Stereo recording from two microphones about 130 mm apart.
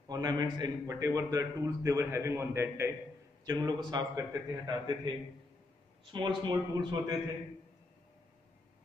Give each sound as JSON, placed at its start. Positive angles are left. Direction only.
{"t": 0.1, "sound": "a man's voice", "side_deg": -30}
{"t": 3.4, "sound": "a man's voice", "side_deg": -30}
{"t": 6.1, "sound": "a man's voice", "side_deg": -35}